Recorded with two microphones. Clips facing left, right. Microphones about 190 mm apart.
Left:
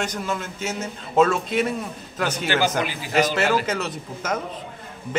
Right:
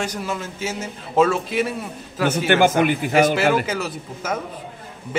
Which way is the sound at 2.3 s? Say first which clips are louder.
Right 7 dB; 55° right (ahead or behind).